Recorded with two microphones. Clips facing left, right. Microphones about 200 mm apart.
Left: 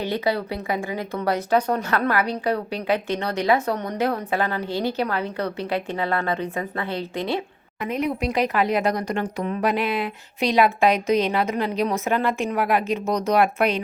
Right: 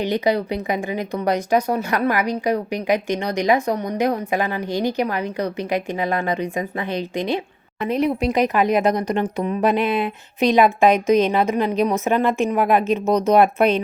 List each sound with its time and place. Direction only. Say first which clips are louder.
0.0 s speech: right 4 dB; 15° right (ahead or behind)
7.8 s speech: right 4 dB; 30° right (ahead or behind)